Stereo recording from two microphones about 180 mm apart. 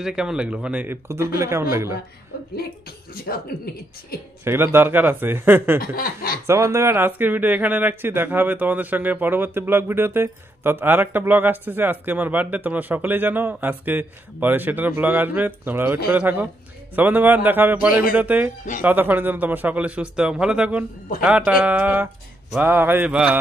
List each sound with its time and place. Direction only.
0.0 s speech: 5° right (ahead or behind)
2.3 s chuckle: 60° left (ahead or behind)
4.1 s chuckle: 55° left (ahead or behind)
4.5 s speech: 15° right (ahead or behind)
5.8 s chuckle: 55° left (ahead or behind)
6.4 s speech: 15° right (ahead or behind)